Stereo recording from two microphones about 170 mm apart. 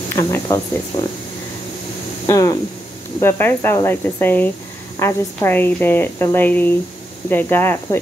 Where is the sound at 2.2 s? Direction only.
20° left (ahead or behind).